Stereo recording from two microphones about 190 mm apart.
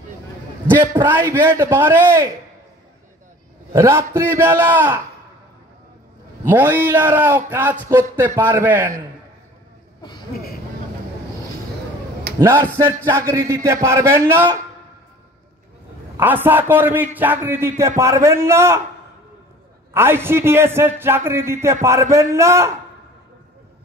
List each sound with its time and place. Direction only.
1.0 s speech: 10° right (ahead or behind)
3.7 s speech: 15° right (ahead or behind)
6.4 s speech: 10° right (ahead or behind)
12.4 s speech: 20° right (ahead or behind)
16.2 s speech: 10° right (ahead or behind)
19.9 s speech: 10° right (ahead or behind)